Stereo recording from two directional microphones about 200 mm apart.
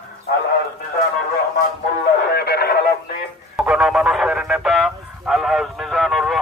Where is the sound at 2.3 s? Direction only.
55° left (ahead or behind).